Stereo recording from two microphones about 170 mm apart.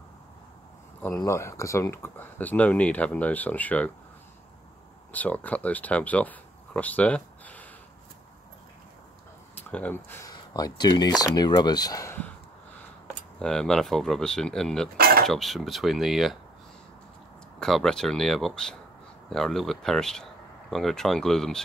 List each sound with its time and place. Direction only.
1.0 s speech: 15° left (ahead or behind)
5.1 s speech: 10° left (ahead or behind)
9.6 s speech: 10° left (ahead or behind)
10.3 s speech: 25° left (ahead or behind)
13.4 s speech: 5° left (ahead or behind)
15.0 s cutlery: 65° right (ahead or behind)
15.2 s speech: centre (ahead or behind)
17.6 s speech: 5° left (ahead or behind)